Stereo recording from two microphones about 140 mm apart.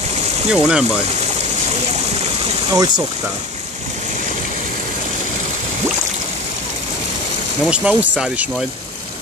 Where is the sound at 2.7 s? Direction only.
25° right (ahead or behind).